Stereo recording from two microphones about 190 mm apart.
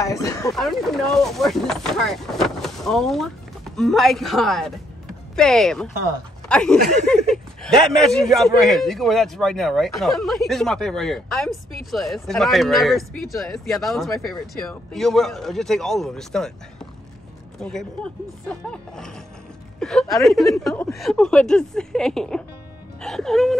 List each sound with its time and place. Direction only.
0.0 s speech: 15° left (ahead or behind)
0.5 s a man's voice: centre (ahead or behind)
17.6 s a man's voice: 5° left (ahead or behind)